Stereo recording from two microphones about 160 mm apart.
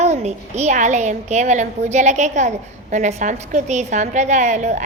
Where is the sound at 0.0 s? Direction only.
45° right (ahead or behind).